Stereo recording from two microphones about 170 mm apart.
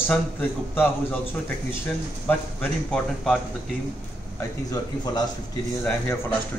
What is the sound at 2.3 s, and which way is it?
A man's voice, 10° left (ahead or behind).